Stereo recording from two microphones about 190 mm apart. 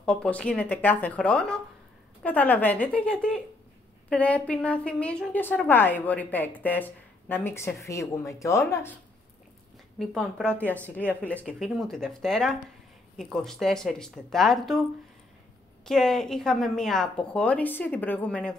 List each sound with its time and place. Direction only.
0.0 s a woman's voice: 5° left (ahead or behind)
9.9 s a woman's voice: 5° left (ahead or behind)
15.8 s a woman's voice: centre (ahead or behind)